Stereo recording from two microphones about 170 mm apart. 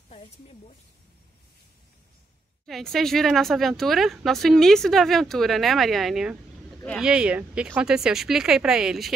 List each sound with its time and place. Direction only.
2.6 s speech: centre (ahead or behind)